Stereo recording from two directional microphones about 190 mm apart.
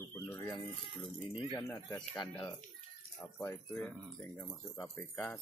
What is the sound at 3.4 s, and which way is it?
Speech, 10° left (ahead or behind).